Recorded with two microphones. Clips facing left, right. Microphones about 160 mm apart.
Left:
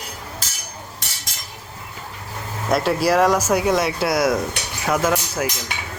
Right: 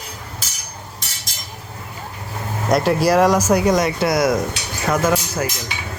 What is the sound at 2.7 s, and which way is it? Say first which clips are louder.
Speech: right 2 dB; centre (ahead or behind).